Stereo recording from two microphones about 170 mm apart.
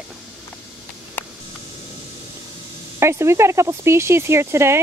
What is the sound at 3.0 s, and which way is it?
Speech, 15° right (ahead or behind).